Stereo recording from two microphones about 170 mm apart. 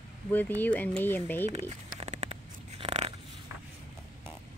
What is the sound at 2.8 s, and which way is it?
Dog, 40° right (ahead or behind).